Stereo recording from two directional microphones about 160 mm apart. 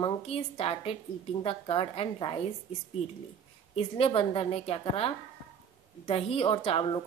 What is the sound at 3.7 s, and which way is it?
A woman's voice, 35° left (ahead or behind).